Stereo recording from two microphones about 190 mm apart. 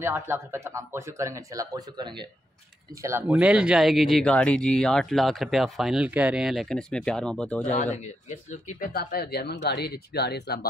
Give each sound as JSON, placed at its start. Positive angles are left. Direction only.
{"t": 0.0, "sound": "speech", "side_deg": -10}
{"t": 3.0, "sound": "speech", "side_deg": -10}
{"t": 7.6, "sound": "speech", "side_deg": 40}
{"t": 8.9, "sound": "speech", "side_deg": 55}